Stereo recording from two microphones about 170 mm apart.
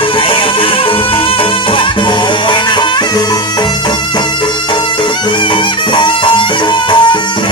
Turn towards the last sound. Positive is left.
turn(degrees=25)  # may be behind; listen again after turning